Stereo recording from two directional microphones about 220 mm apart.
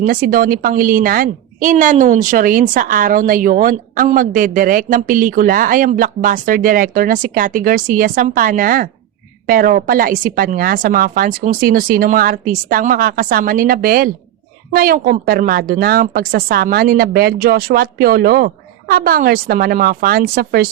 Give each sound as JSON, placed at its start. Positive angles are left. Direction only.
{"t": 0.0, "sound": "a woman's voice", "side_deg": -40}